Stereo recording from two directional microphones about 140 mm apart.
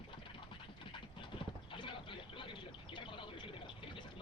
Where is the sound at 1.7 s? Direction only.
35° left (ahead or behind).